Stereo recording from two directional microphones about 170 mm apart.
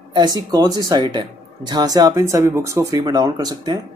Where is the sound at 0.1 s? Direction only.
25° right (ahead or behind).